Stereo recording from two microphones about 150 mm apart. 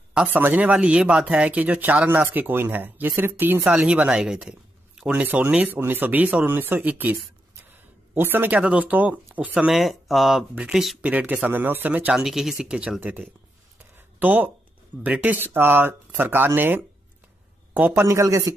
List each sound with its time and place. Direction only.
0.1 s speech: 10° right (ahead or behind)
13.7 s a sound: 10° right (ahead or behind)
15.0 s a man's voice: 10° right (ahead or behind)